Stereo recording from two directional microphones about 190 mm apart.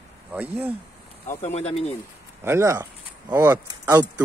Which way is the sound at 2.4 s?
15° right (ahead or behind).